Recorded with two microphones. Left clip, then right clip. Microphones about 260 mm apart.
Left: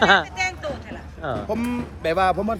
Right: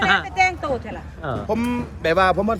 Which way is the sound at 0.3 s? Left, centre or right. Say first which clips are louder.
Right 7 dB; right.